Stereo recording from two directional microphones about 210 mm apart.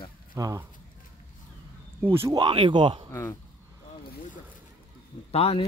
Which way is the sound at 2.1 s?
15° right (ahead or behind).